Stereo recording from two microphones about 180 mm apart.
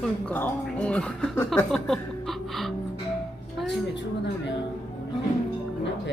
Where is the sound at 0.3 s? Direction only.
10° left (ahead or behind).